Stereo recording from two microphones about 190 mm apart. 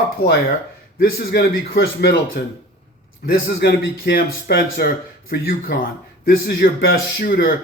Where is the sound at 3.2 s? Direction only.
60° left (ahead or behind).